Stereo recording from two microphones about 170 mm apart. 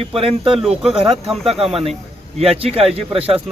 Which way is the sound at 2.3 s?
35° right (ahead or behind).